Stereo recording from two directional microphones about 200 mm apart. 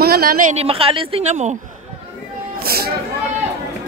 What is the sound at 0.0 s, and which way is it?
A woman's voice, 50° right (ahead or behind).